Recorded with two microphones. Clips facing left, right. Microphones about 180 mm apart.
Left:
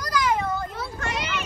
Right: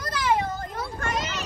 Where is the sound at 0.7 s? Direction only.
45° right (ahead or behind).